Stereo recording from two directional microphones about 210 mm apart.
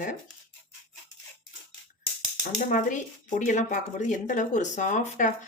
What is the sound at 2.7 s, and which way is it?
A woman's voice, 40° left (ahead or behind).